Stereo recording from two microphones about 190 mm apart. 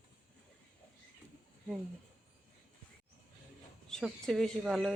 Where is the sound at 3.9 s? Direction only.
5° left (ahead or behind).